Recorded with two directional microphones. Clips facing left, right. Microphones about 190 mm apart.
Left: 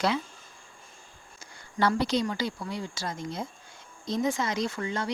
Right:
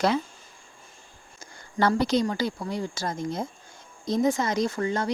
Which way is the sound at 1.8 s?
45° right (ahead or behind).